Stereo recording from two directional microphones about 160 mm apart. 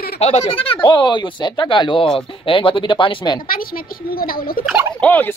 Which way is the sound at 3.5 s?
65° left (ahead or behind).